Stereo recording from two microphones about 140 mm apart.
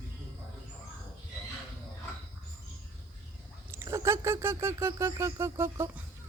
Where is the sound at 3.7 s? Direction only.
20° right (ahead or behind).